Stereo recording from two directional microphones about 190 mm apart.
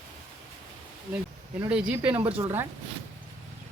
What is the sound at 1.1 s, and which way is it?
Speech, 10° right (ahead or behind).